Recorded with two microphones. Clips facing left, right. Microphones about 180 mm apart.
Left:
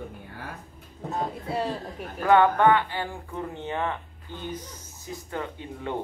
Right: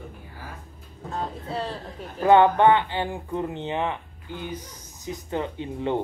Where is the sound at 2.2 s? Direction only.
25° right (ahead or behind).